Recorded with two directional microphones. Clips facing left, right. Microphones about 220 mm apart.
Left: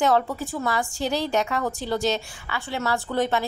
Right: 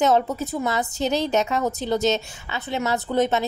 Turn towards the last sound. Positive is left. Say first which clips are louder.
# right 3 dB
turn(degrees=-20)  # may be behind; listen again after turning